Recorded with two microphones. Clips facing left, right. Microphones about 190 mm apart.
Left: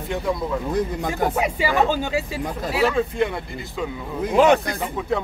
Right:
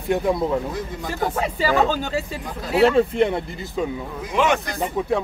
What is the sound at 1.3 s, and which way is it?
Speech, 15° left (ahead or behind).